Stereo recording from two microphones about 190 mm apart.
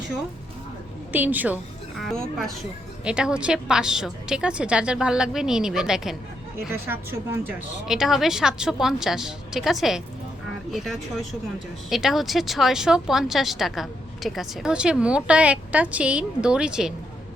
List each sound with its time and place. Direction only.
1.1 s a woman's voice: 10° right (ahead or behind)
2.0 s speech: centre (ahead or behind)